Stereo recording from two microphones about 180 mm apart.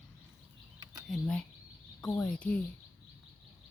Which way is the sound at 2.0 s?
10° left (ahead or behind).